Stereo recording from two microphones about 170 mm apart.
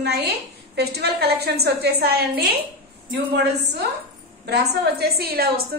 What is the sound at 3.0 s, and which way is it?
Speech, 90° right.